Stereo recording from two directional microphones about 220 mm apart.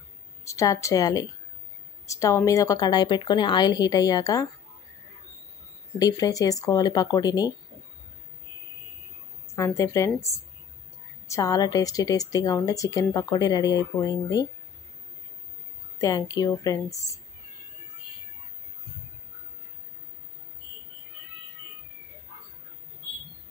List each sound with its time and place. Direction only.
0.5 s a woman's voice: 15° left (ahead or behind)
5.9 s a woman's voice: 15° left (ahead or behind)
9.6 s a woman's voice: 15° left (ahead or behind)
11.2 s a woman's voice: 15° left (ahead or behind)
16.0 s a woman's voice: 15° left (ahead or behind)